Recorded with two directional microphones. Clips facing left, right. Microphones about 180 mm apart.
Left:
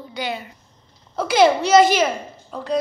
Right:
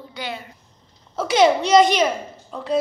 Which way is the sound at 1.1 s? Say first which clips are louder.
Left 1 dB; centre (ahead or behind).